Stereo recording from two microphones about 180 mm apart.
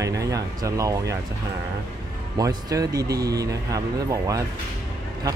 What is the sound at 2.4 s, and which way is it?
Speech, 20° right (ahead or behind).